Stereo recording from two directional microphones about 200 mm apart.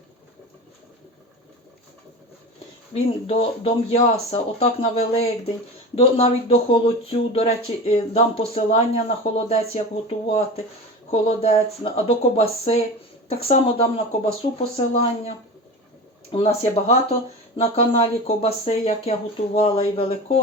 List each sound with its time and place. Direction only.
2.9 s speech: 30° left (ahead or behind)
16.3 s speech: 30° left (ahead or behind)